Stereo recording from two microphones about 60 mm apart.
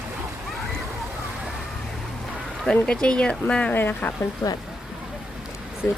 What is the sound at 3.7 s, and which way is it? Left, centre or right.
Speech, left.